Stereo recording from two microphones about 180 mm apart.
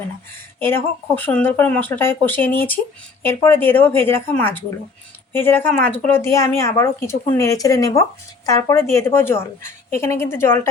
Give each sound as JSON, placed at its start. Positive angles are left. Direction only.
{"t": 0.7, "sound": "speech", "side_deg": 10}